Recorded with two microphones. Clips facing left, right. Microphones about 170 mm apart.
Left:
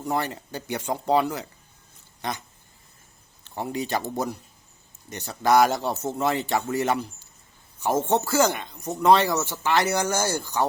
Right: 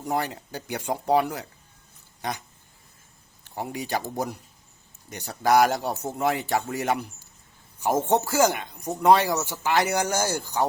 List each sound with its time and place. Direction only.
0.0 s speech: 15° right (ahead or behind)
3.4 s speech: 10° right (ahead or behind)